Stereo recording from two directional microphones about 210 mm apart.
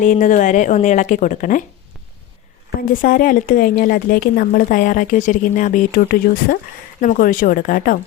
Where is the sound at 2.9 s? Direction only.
40° left (ahead or behind).